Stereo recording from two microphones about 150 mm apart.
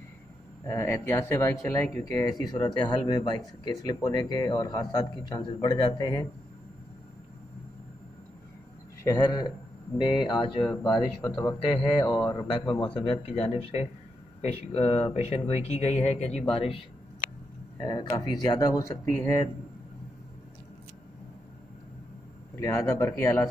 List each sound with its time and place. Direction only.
0.7 s speech: 15° left (ahead or behind)
9.0 s speech: 25° left (ahead or behind)
10.9 s speech: 5° left (ahead or behind)
11.4 s speech: 35° left (ahead or behind)
17.7 s speech: 25° left (ahead or behind)
22.6 s speech: 20° left (ahead or behind)